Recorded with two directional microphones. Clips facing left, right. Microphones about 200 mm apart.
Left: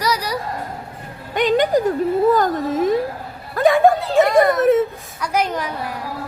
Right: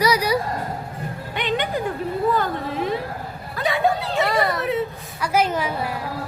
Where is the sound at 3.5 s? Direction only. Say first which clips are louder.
Left 8 dB; 50° left (ahead or behind).